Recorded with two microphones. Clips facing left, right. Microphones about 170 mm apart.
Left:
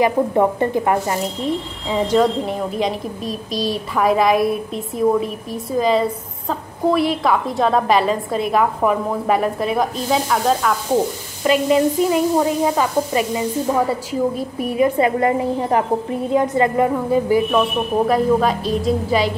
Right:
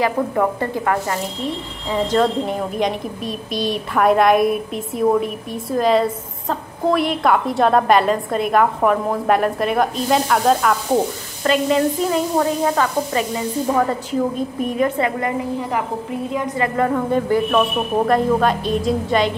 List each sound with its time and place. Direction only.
0.0 s speech: 20° left (ahead or behind)
2.1 s a woman's voice: centre (ahead or behind)
15.0 s speech: 25° left (ahead or behind)
16.7 s a woman's voice: 10° left (ahead or behind)